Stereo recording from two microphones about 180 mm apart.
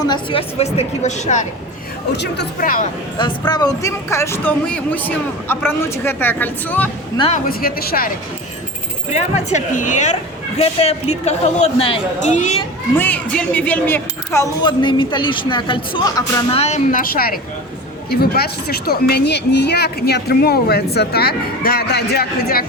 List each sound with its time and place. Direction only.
0.0 s a woman's voice: 25° left (ahead or behind); by 1.5 s 40° left (ahead or behind)
2.1 s speech: 70° left (ahead or behind); by 2.8 s 55° left (ahead or behind)
3.2 s speech: 25° left (ahead or behind); by 6.9 s 10° left (ahead or behind)
7.2 s a woman's voice: 40° left (ahead or behind)
7.4 s speech: 55° left (ahead or behind)
9.0 s a woman's voice: 40° left (ahead or behind)
13.0 s speech: 10° left (ahead or behind)
14.6 s speech: 25° left (ahead or behind)
16.6 s a woman's voice: 40° left (ahead or behind); by 22.6 s 60° left (ahead or behind)